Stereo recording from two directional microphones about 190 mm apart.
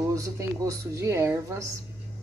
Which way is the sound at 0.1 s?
15° right (ahead or behind).